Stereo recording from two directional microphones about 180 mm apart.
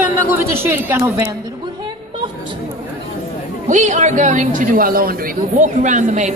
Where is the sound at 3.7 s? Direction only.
40° right (ahead or behind).